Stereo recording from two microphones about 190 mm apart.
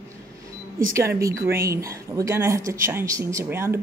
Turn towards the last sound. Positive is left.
turn(degrees=-15)  # may be behind; listen again after turning